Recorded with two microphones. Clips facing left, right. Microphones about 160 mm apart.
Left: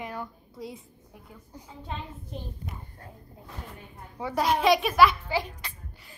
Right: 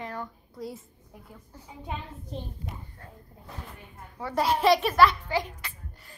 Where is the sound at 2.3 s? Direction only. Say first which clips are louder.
Right 3 dB; 35° right (ahead or behind).